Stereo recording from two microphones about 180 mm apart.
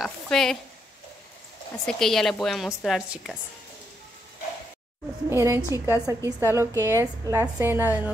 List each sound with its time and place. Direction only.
0.0 s speech: centre (ahead or behind)
1.9 s a woman's voice: centre (ahead or behind)
5.3 s a woman's voice: 15° right (ahead or behind)